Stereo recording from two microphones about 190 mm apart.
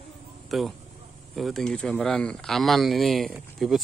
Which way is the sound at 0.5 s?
Centre (ahead or behind).